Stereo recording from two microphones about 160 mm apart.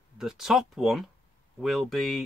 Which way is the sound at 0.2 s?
Centre (ahead or behind).